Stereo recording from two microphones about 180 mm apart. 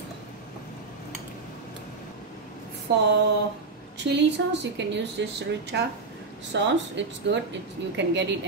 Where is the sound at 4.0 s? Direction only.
75° right (ahead or behind).